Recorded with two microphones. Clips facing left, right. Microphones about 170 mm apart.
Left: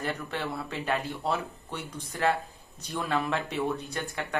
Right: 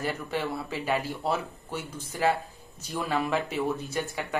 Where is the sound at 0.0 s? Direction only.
5° right (ahead or behind).